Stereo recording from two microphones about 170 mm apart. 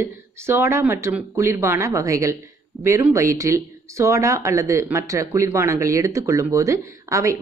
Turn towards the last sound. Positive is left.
turn(degrees=-20)  # may be behind; listen again after turning